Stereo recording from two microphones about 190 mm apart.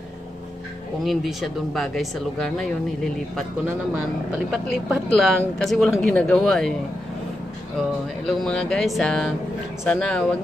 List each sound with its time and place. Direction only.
1.0 s speech: centre (ahead or behind)
4.5 s speech: centre (ahead or behind)
8.4 s speech: 5° left (ahead or behind)